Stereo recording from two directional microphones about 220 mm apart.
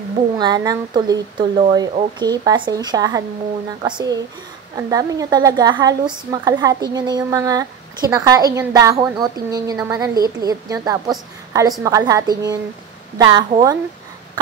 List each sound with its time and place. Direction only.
0.4 s speech: 20° right (ahead or behind)